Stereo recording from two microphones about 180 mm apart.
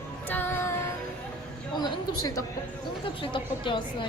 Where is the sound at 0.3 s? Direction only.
10° left (ahead or behind).